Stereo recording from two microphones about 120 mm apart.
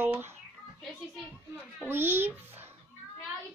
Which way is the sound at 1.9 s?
20° right (ahead or behind).